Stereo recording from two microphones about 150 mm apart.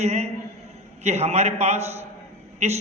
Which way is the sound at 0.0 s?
45° right (ahead or behind).